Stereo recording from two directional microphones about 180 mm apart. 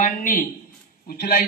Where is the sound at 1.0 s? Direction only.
60° left (ahead or behind).